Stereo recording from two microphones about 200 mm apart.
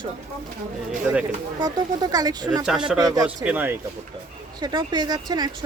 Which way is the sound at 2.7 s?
5° right (ahead or behind).